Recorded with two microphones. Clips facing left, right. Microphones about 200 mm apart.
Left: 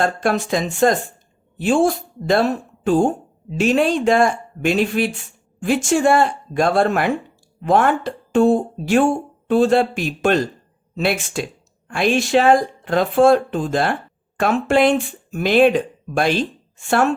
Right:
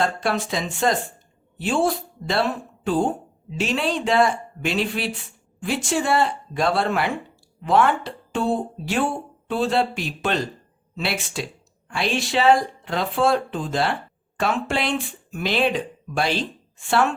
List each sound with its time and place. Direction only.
0.0 s speech: 50° left (ahead or behind)